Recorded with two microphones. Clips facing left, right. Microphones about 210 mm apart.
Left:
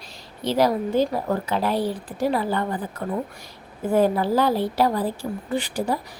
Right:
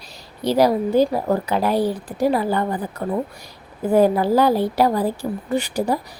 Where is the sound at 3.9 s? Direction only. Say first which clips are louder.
Right 4 dB; 40° right (ahead or behind).